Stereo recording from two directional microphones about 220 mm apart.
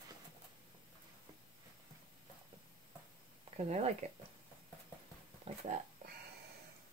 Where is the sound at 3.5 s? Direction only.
30° right (ahead or behind).